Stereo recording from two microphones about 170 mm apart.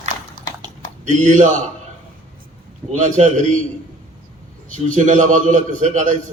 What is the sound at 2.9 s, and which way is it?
Speech, 45° right (ahead or behind).